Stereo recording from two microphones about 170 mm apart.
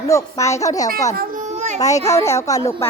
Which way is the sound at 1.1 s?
50° right (ahead or behind).